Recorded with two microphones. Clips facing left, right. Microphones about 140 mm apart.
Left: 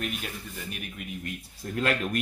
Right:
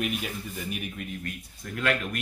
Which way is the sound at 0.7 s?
Centre (ahead or behind).